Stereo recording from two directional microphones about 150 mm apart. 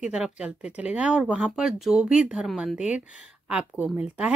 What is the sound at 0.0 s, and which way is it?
Speech, 5° right (ahead or behind).